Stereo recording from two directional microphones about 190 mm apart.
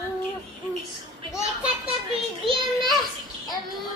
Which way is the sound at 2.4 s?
30° right (ahead or behind).